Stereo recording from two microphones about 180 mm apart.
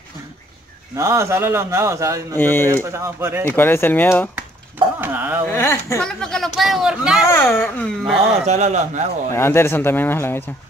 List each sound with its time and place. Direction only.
0.9 s a man's voice: 15° right (ahead or behind)
2.3 s speech: 10° left (ahead or behind)
2.7 s a man's voice: 15° right (ahead or behind)
3.4 s speech: 10° left (ahead or behind)
5.0 s a man's voice: 10° right (ahead or behind)
5.5 s speech: 15° left (ahead or behind)
6.0 s speech: centre (ahead or behind)
7.4 s speech: 10° left (ahead or behind)
8.5 s speech: 40° right (ahead or behind)
9.3 s speech: 15° left (ahead or behind)